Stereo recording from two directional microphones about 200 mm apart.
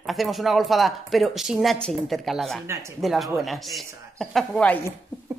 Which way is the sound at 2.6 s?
10° right (ahead or behind).